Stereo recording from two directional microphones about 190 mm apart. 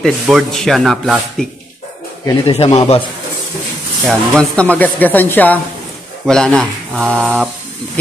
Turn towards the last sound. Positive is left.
turn(degrees=0)  # may be behind; listen again after turning